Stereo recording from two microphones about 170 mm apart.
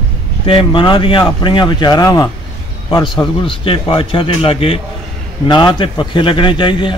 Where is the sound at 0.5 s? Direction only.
30° left (ahead or behind).